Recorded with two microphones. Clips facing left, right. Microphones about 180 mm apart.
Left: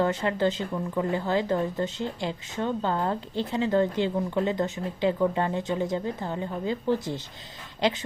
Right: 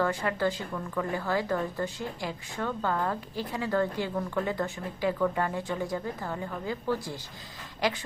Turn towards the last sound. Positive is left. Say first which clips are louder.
# left 3 dB
turn(degrees=25)  # may be behind; listen again after turning